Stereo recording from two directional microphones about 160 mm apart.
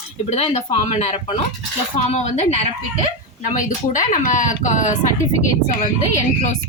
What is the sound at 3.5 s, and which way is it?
Speech, 50° left (ahead or behind).